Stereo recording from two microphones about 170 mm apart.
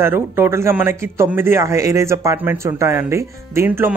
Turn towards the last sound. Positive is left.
turn(degrees=-15)  # may be behind; listen again after turning